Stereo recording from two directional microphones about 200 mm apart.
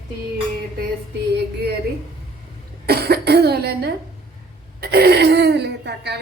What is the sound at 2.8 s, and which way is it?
Speech, 50° right (ahead or behind).